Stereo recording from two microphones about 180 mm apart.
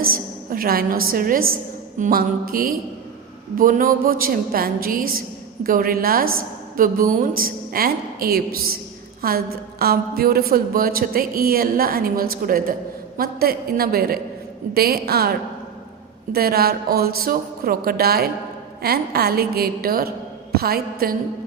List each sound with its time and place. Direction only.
0.1 s a woman's voice: 55° right (ahead or behind)